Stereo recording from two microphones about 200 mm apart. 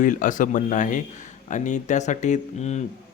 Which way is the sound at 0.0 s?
40° left (ahead or behind).